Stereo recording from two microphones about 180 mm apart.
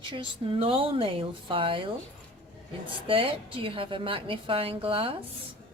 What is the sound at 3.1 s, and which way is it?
A woman's voice, 30° right (ahead or behind).